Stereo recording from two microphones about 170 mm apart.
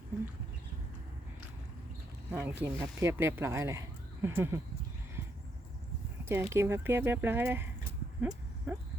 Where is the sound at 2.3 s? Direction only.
15° right (ahead or behind).